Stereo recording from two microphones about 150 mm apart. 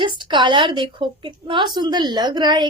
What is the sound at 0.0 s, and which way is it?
A woman's voice, 30° right (ahead or behind).